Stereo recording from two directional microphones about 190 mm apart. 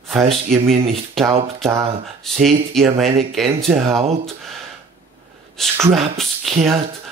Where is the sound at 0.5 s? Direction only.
Centre (ahead or behind).